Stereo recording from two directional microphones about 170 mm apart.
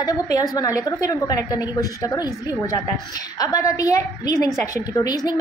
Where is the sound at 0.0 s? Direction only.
20° left (ahead or behind).